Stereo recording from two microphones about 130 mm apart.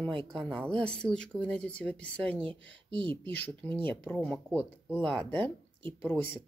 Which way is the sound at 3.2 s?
10° left (ahead or behind).